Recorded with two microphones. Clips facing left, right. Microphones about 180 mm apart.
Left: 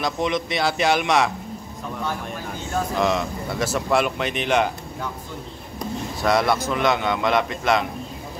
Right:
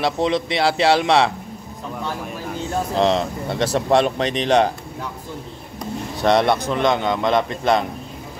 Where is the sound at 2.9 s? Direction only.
30° right (ahead or behind).